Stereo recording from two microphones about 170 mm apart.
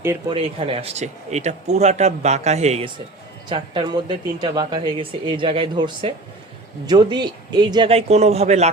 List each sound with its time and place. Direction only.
0.3 s speech: 35° right (ahead or behind)
3.5 s speech: 25° right (ahead or behind)